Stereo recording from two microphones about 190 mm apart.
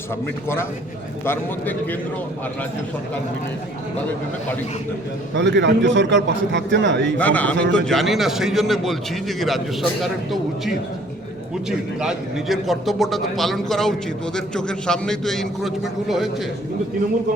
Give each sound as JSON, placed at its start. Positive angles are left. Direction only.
{"t": 0.4, "sound": "speech", "side_deg": 10}
{"t": 5.3, "sound": "a man's voice", "side_deg": -65}
{"t": 7.2, "sound": "a man's voice", "side_deg": 10}
{"t": 11.9, "sound": "a man's voice", "side_deg": 0}